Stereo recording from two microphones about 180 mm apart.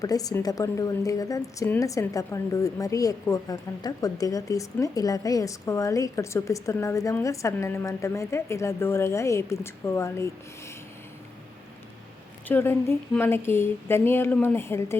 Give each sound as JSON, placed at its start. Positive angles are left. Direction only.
{"t": 0.0, "sound": "a woman's voice", "side_deg": 20}
{"t": 12.5, "sound": "a woman's voice", "side_deg": 10}